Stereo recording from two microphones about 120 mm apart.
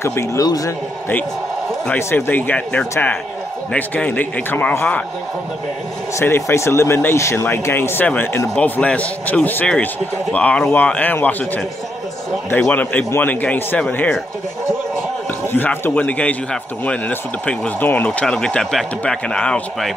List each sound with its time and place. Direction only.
0.0 s speech: 25° left (ahead or behind)
2.0 s speech: 20° left (ahead or behind)
6.1 s speech: 25° left (ahead or behind)
15.5 s speech: 15° left (ahead or behind)